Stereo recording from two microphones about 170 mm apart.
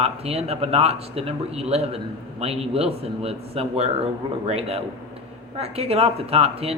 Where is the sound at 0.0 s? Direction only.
35° right (ahead or behind).